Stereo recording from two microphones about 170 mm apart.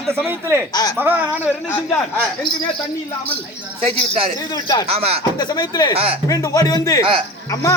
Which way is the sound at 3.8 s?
35° right (ahead or behind).